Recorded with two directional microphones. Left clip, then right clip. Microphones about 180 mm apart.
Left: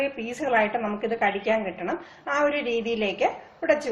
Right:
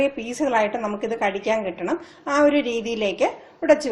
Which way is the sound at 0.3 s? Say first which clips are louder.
Right 2 dB; 40° right (ahead or behind).